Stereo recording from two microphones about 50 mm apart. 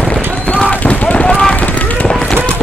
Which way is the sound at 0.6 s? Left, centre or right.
Centre.